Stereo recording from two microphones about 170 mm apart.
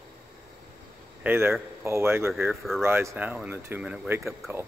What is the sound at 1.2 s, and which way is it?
Speech, 10° right (ahead or behind).